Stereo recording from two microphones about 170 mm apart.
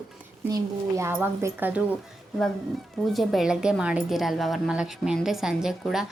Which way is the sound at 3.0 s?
Centre (ahead or behind).